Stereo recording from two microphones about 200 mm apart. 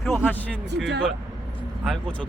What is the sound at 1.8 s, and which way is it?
Speech, centre (ahead or behind).